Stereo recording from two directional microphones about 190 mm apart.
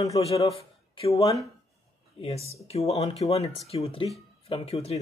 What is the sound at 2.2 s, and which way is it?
Speech, 35° left (ahead or behind).